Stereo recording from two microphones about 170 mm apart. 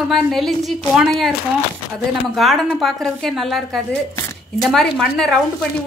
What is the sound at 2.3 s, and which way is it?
A woman's voice, centre (ahead or behind).